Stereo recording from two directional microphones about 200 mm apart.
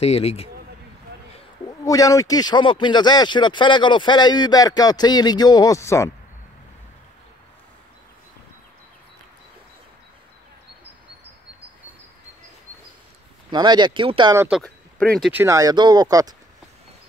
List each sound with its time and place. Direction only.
0.0 s speech: 30° left (ahead or behind)
1.7 s speech: 15° left (ahead or behind)
13.5 s speech: 20° right (ahead or behind)
14.3 s speech: 15° right (ahead or behind)
14.6 s speech: 5° left (ahead or behind)
15.4 s speech: 15° right (ahead or behind)